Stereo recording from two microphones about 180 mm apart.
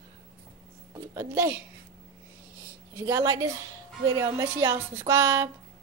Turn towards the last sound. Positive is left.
turn(degrees=-15)  # may be behind; listen again after turning